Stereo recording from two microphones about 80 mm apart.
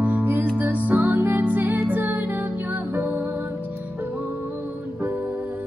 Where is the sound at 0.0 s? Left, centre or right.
Right.